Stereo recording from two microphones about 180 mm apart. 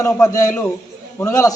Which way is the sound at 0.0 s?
20° left (ahead or behind).